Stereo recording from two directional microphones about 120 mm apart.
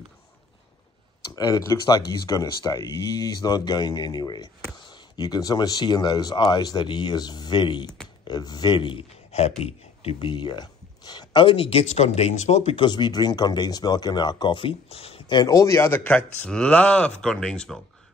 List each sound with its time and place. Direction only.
1.3 s speech: 35° left (ahead or behind)
9.6 s speech: 55° left (ahead or behind); by 12.7 s 70° left (ahead or behind)
12.7 s speech: 40° left (ahead or behind); by 15.2 s 55° left (ahead or behind)
15.2 s speech: 35° left (ahead or behind); by 17.8 s 5° left (ahead or behind)